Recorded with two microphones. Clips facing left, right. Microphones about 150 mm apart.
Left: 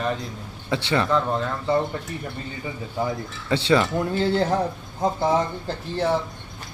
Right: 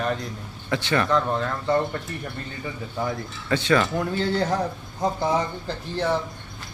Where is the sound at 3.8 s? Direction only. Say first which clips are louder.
Left 2 dB; 5° left (ahead or behind).